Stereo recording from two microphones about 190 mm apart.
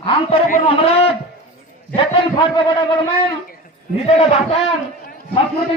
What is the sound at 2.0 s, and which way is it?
A man's voice, 25° left (ahead or behind).